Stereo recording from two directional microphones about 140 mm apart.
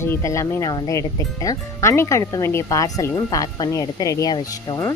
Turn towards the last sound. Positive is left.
turn(degrees=20)  # may be behind; listen again after turning